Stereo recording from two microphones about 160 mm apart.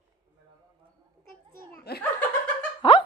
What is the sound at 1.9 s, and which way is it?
Speech, 80° left.